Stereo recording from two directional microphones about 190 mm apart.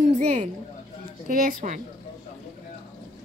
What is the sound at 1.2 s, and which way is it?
Speech, 45° right (ahead or behind).